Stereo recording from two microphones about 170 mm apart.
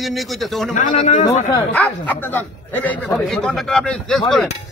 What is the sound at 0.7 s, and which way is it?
Speech, 50° left (ahead or behind).